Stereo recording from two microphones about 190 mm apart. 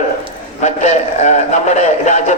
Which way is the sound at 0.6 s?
40° left (ahead or behind).